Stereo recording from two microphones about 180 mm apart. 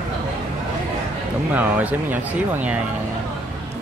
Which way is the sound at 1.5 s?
10° right (ahead or behind).